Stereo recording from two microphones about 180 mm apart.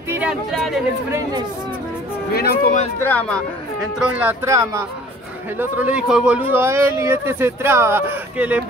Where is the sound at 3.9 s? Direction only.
5° right (ahead or behind).